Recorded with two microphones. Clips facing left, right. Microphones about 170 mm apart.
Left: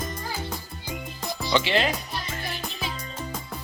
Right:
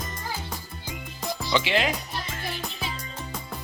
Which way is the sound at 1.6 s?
10° right (ahead or behind).